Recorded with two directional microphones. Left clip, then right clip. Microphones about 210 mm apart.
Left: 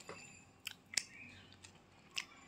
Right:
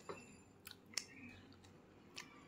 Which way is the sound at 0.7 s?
Centre (ahead or behind).